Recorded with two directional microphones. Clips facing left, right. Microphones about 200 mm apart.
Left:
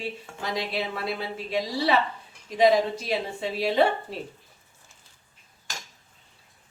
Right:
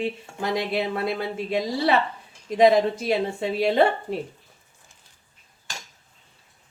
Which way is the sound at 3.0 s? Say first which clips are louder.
Right 5 dB; 50° right (ahead or behind).